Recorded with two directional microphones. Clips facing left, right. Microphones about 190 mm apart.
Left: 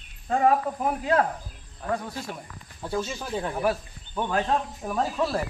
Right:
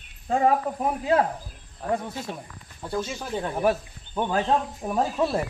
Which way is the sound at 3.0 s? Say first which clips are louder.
Right 1 dB; 5° right (ahead or behind).